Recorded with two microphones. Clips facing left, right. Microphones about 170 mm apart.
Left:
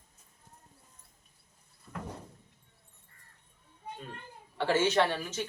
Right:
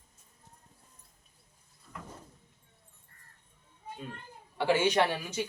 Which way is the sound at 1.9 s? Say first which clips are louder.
Left 4 dB; 40° left (ahead or behind).